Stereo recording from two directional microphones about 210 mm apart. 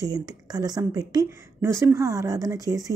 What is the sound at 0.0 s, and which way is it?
A woman's voice, 20° right (ahead or behind).